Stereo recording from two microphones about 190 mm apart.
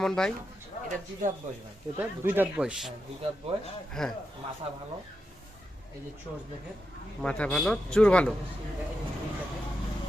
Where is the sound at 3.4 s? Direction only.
30° right (ahead or behind).